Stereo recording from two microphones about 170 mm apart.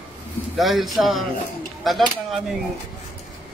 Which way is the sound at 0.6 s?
Centre (ahead or behind).